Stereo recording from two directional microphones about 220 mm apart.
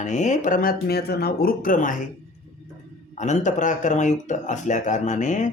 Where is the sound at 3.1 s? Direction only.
30° left (ahead or behind).